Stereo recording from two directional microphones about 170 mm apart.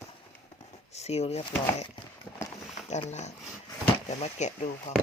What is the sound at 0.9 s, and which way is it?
Speech, 40° left (ahead or behind).